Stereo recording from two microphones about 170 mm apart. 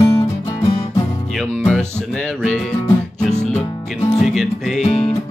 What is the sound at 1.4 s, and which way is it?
Music, 5° left (ahead or behind).